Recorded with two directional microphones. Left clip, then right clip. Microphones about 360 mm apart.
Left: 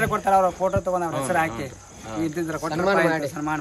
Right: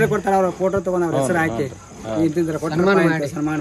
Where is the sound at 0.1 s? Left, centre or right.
Centre.